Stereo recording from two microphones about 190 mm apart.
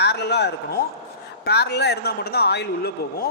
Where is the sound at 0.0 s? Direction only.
60° left (ahead or behind).